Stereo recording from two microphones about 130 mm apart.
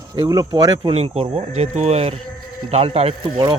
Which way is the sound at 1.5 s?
60° right (ahead or behind).